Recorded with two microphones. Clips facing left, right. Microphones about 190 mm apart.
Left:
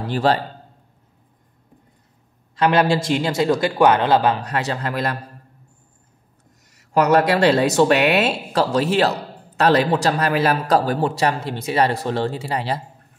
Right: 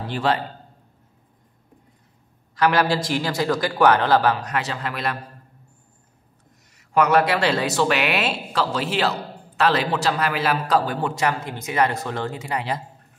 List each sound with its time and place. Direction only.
0.1 s a man's voice: 40° left (ahead or behind)
2.5 s a man's voice: 25° left (ahead or behind); by 5.1 s 40° left (ahead or behind)
6.9 s a man's voice: 40° left (ahead or behind)